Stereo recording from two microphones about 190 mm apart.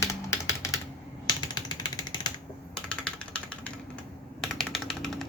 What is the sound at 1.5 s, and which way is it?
Vehicle, 20° left (ahead or behind).